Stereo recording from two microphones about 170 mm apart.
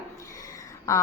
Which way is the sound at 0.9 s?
20° left (ahead or behind).